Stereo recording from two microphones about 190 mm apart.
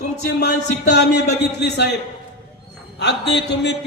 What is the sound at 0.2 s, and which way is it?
A man's voice, 60° left (ahead or behind).